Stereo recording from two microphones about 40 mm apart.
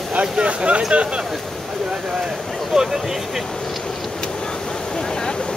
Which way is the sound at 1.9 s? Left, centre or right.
Centre.